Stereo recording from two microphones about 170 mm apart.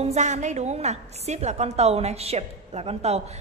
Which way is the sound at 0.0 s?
40° right (ahead or behind).